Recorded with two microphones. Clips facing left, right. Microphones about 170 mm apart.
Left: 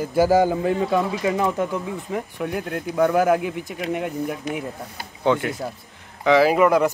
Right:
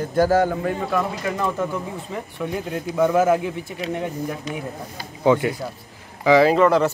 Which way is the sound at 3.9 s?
10° left (ahead or behind).